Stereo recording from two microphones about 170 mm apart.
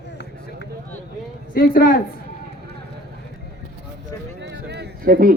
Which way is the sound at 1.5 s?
55° left (ahead or behind).